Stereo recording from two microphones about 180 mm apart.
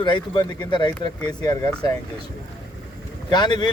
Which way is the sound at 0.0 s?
25° left (ahead or behind).